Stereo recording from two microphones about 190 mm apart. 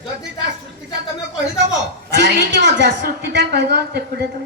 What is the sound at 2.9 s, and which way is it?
A woman's voice, 55° right (ahead or behind).